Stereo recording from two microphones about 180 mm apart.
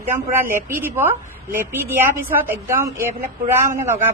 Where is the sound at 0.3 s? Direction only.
10° right (ahead or behind).